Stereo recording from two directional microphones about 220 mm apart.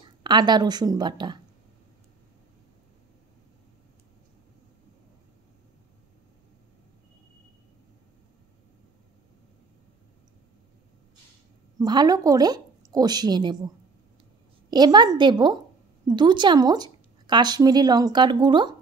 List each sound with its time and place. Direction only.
0.2 s speech: 20° right (ahead or behind)
11.8 s a woman's voice: 20° right (ahead or behind)
14.7 s speech: 20° right (ahead or behind)